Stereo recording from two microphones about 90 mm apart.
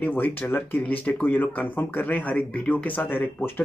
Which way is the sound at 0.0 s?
20° left (ahead or behind).